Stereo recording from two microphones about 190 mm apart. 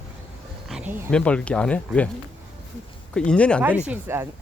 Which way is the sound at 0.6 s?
5° right (ahead or behind).